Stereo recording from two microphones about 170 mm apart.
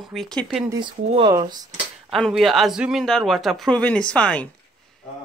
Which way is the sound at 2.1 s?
Centre (ahead or behind).